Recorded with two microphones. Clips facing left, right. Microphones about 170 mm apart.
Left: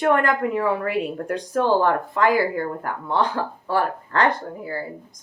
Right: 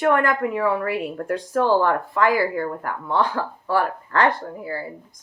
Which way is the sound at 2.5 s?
40° left (ahead or behind).